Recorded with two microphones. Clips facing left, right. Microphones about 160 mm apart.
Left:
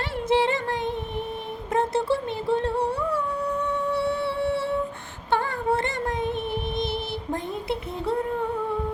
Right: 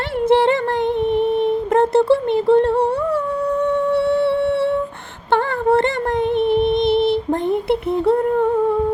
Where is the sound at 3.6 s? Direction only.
65° right (ahead or behind).